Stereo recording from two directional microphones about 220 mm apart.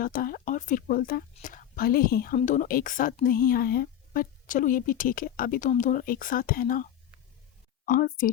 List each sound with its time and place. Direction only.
0.0 s speech: 40° left (ahead or behind)
7.9 s speech: 40° left (ahead or behind)